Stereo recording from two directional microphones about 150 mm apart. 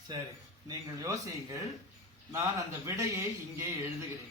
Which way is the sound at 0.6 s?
25° right (ahead or behind).